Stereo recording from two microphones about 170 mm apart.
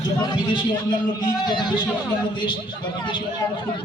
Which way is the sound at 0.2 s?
25° left (ahead or behind).